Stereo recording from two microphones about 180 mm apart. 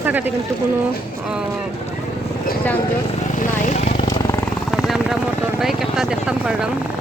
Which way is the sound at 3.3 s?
45° left (ahead or behind).